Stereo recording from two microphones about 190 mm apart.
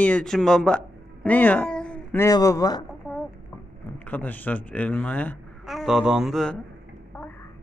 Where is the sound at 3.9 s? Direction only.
10° left (ahead or behind).